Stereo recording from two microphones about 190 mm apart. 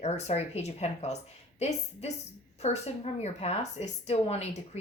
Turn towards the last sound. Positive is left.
turn(degrees=35)  # may be behind; listen again after turning